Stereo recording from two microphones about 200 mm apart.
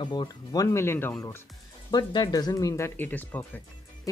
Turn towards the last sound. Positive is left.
turn(degrees=10)  # may be behind; listen again after turning